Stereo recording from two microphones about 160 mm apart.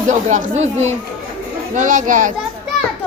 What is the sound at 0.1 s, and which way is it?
Speech, 50° right (ahead or behind).